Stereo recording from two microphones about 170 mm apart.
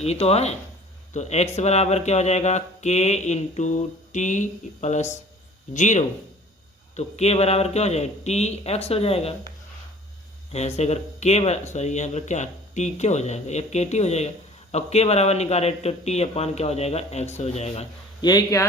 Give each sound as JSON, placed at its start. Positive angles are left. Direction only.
{"t": 0.0, "sound": "speech", "side_deg": 40}
{"t": 10.5, "sound": "speech", "side_deg": 40}
{"t": 18.2, "sound": "a man's voice", "side_deg": 25}